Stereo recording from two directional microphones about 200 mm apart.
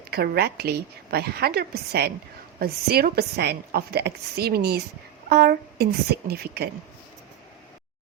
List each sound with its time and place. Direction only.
0.1 s a woman's voice: 50° right (ahead or behind)